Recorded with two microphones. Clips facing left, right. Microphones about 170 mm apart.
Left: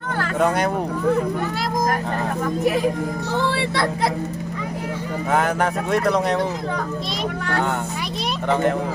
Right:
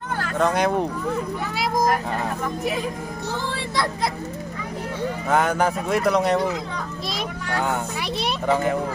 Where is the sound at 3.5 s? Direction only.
75° left (ahead or behind).